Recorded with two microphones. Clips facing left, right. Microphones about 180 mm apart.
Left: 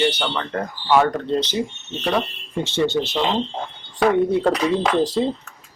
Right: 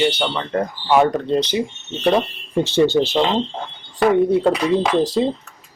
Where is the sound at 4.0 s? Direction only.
5° right (ahead or behind).